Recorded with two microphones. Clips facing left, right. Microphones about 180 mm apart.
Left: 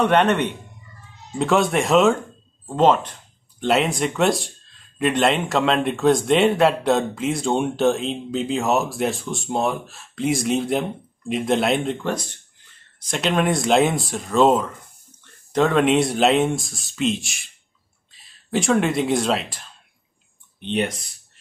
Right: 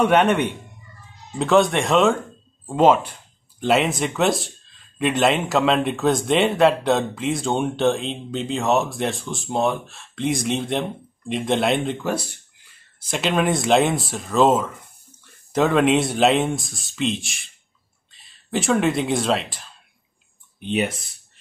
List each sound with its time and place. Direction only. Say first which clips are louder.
0.0 s speech: right 1 dB; 10° right (ahead or behind)